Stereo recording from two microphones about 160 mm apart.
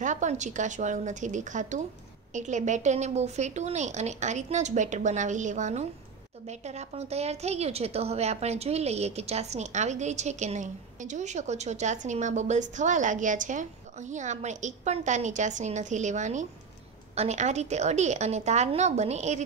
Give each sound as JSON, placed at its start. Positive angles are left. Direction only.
{"t": 0.0, "sound": "a woman's voice", "side_deg": -50}